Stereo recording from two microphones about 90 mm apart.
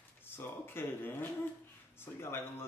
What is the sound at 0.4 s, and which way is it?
Speech, 25° left (ahead or behind).